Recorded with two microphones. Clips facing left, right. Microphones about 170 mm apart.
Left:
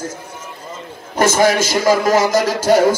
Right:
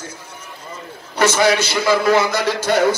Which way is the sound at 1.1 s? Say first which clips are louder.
Left 2 dB; 45° left (ahead or behind).